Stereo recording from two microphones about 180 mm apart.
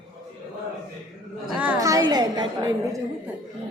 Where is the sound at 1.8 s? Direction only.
20° right (ahead or behind).